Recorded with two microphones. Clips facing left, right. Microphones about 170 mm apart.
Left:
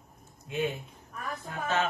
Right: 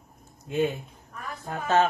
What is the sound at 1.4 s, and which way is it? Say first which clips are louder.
Speech: right 7 dB; 45° right (ahead or behind).